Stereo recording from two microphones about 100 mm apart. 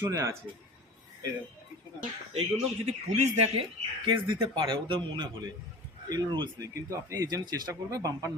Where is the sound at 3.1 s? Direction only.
90° right.